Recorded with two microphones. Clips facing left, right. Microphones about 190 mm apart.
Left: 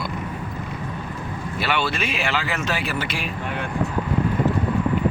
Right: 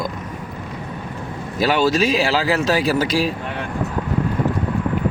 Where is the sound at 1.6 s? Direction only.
40° right (ahead or behind).